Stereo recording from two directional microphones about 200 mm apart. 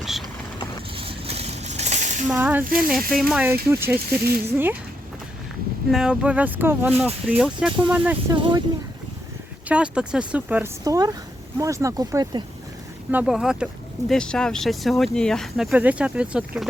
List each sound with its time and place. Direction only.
0.0 s vehicle: centre (ahead or behind)
0.9 s a sound: 30° right (ahead or behind)
2.3 s speech: 10° right (ahead or behind)
5.9 s speech: 5° right (ahead or behind)
8.3 s speech: 20° right (ahead or behind)
9.6 s speech: 5° right (ahead or behind)
13.1 s speech: 5° right (ahead or behind)